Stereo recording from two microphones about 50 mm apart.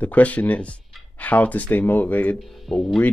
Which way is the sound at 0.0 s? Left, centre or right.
Left.